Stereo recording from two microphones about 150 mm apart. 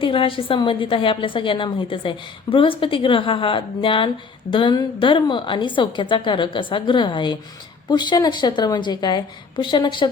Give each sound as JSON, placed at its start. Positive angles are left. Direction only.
{"t": 0.0, "sound": "a woman's voice", "side_deg": 35}